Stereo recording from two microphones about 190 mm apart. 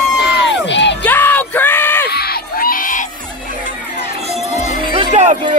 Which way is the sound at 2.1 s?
55° left (ahead or behind).